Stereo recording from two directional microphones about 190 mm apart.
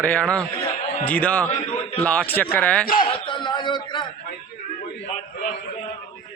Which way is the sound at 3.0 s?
25° left (ahead or behind).